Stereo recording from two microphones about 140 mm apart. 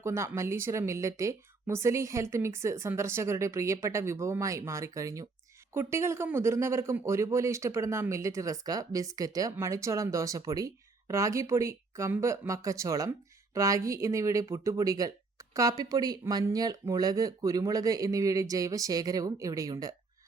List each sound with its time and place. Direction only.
0.0 s speech: 20° right (ahead or behind)